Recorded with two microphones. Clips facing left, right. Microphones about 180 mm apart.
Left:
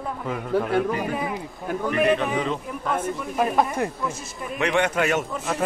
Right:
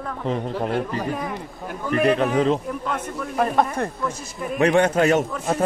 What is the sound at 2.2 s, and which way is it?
Speech, 35° right (ahead or behind).